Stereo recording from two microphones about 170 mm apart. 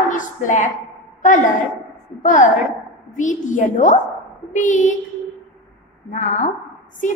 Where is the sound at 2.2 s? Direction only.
50° left (ahead or behind).